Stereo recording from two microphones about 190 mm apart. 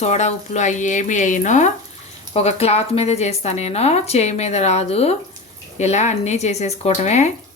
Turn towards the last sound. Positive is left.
turn(degrees=35)  # may be behind; listen again after turning